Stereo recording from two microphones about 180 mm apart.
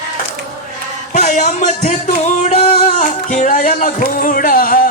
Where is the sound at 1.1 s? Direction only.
45° left (ahead or behind).